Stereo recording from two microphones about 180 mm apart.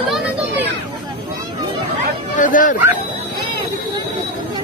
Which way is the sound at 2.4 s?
45° left (ahead or behind).